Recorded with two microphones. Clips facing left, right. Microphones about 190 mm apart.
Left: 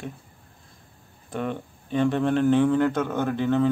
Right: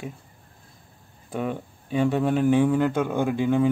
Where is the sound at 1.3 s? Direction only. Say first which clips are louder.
Right 1 dB; 10° right (ahead or behind).